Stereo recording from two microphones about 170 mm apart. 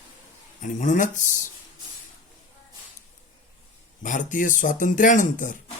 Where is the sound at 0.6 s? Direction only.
45° left (ahead or behind).